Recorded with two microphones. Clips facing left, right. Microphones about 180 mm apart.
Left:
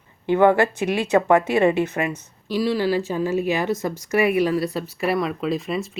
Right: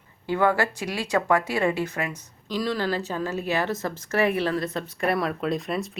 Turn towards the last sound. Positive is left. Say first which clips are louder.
# left 2 dB
turn(degrees=0)  # may be behind; listen again after turning